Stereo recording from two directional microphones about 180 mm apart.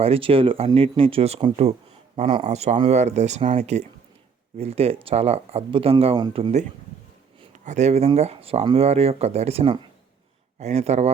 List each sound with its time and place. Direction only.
0.0 s speech: 30° right (ahead or behind)
7.5 s speech: 40° right (ahead or behind)